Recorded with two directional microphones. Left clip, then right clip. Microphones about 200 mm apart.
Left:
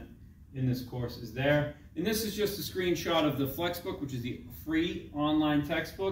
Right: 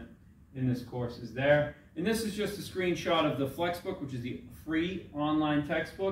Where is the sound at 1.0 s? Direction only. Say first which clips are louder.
Right 1 dB; 10° right (ahead or behind).